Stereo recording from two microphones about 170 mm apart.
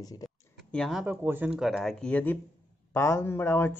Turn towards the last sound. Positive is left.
turn(degrees=15)  # may be behind; listen again after turning